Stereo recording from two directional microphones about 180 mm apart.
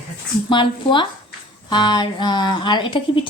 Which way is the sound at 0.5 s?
25° left (ahead or behind).